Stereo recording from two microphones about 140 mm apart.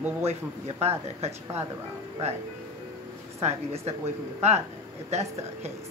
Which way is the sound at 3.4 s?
50° right (ahead or behind).